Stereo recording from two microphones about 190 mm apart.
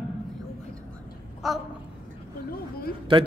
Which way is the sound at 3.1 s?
30° right (ahead or behind).